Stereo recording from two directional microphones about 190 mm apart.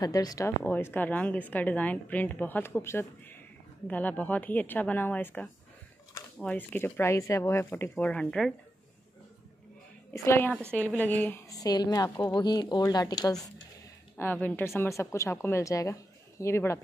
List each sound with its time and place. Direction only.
0.0 s a woman's voice: 20° left (ahead or behind); by 8.5 s 5° left (ahead or behind)
10.1 s a woman's voice: 15° left (ahead or behind)